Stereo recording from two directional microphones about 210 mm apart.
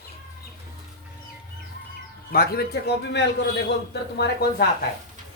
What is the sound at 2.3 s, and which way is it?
A man's voice, 45° left (ahead or behind).